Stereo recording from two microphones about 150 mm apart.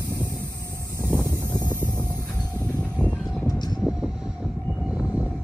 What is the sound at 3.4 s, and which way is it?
Vehicle, 30° left (ahead or behind).